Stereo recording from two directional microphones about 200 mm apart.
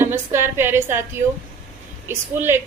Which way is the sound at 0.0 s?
10° right (ahead or behind).